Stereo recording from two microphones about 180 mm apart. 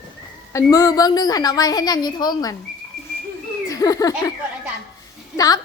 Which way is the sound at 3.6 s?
20° left (ahead or behind).